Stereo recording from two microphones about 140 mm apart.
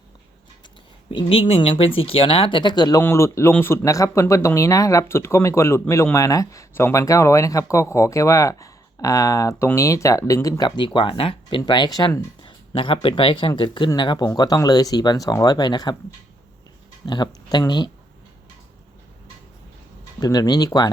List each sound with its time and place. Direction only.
1.1 s speech: 40° left (ahead or behind)
3.0 s speech: 20° left (ahead or behind)
17.1 s speech: 30° left (ahead or behind)
20.1 s speech: 25° left (ahead or behind)